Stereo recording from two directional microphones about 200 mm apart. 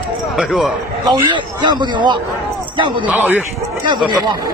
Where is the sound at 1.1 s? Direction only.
20° right (ahead or behind).